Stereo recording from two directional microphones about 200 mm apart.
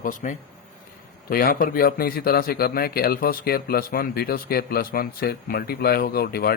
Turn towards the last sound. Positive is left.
turn(degrees=50)  # may be behind; listen again after turning